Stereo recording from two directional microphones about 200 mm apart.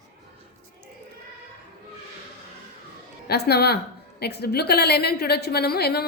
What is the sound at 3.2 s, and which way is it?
A woman's voice, 55° left (ahead or behind).